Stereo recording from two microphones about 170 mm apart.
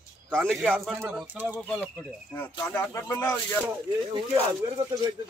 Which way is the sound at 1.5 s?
5° left (ahead or behind).